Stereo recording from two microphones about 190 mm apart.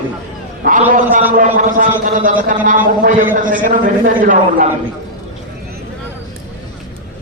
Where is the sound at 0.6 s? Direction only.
45° right (ahead or behind).